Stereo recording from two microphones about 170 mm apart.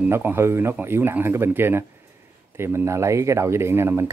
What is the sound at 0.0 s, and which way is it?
Speech, 15° right (ahead or behind).